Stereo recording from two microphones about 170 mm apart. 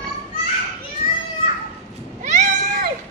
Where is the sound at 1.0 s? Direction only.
55° left (ahead or behind).